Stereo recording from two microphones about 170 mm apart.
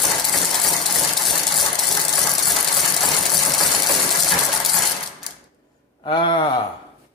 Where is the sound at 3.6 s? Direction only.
Centre (ahead or behind).